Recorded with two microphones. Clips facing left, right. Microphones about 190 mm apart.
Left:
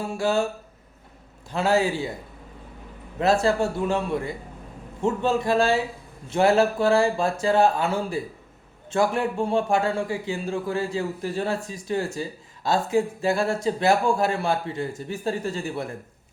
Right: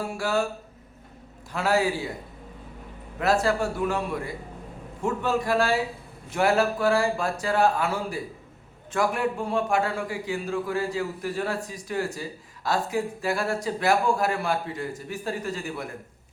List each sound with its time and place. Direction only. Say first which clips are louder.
0.0 s a man's voice: left 3 dB; 25° left (ahead or behind)
1.5 s a man's voice: left 2 dB; 25° left (ahead or behind)
3.2 s a man's voice: left 3 dB; 25° left (ahead or behind)